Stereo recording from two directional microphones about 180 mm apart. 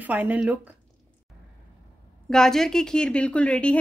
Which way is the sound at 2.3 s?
5° left (ahead or behind).